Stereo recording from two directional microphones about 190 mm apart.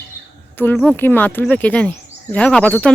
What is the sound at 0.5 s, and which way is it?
Speech, 10° left (ahead or behind).